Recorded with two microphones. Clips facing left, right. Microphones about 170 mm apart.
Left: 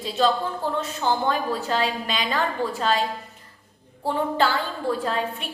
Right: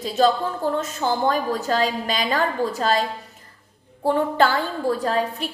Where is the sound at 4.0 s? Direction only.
50° right (ahead or behind).